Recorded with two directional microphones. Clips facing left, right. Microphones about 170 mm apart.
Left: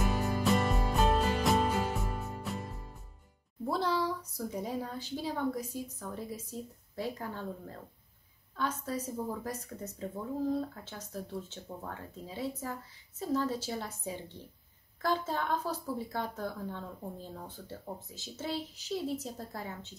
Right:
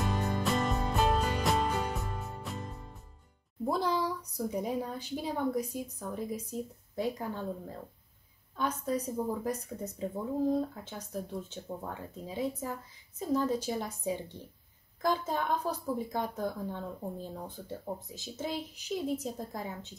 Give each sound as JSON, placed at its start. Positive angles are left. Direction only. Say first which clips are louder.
{"t": 0.0, "sound": "music", "louder": "left 1 dB", "side_deg": 5}
{"t": 3.6, "sound": "a woman's voice", "louder": "right 1 dB", "side_deg": -15}